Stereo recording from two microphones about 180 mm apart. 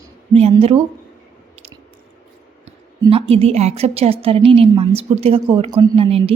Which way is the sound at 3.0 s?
35° right (ahead or behind).